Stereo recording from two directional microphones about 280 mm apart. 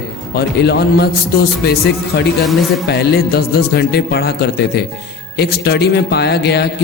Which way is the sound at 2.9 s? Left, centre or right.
Left.